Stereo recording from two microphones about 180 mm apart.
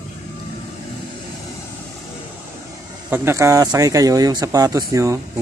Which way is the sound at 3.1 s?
15° right (ahead or behind).